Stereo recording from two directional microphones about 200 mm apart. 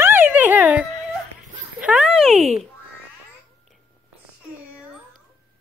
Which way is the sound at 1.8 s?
5° right (ahead or behind).